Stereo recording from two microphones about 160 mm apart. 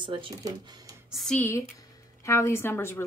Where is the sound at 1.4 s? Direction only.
15° left (ahead or behind).